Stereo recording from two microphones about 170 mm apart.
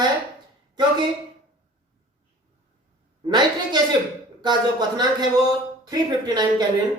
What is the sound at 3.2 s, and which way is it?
Speech, 25° right (ahead or behind).